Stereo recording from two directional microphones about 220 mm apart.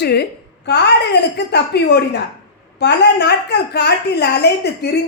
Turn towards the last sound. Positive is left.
turn(degrees=50)  # may be behind; listen again after turning